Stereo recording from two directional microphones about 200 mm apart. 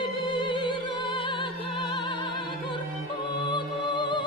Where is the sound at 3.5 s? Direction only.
25° left (ahead or behind).